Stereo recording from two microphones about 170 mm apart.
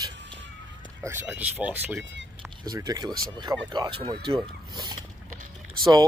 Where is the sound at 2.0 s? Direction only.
90° right.